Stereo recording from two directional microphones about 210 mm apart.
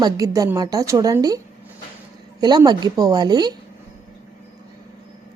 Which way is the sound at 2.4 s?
20° right (ahead or behind).